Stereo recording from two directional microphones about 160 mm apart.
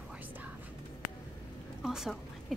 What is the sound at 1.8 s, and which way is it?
Speech, 5° right (ahead or behind).